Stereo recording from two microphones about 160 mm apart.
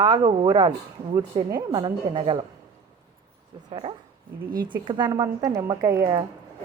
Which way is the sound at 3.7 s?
35° right (ahead or behind).